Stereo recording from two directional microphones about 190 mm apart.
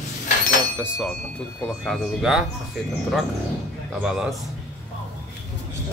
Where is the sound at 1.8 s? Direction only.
Centre (ahead or behind).